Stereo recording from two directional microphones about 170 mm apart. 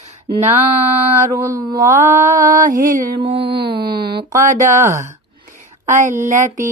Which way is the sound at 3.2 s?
30° right (ahead or behind).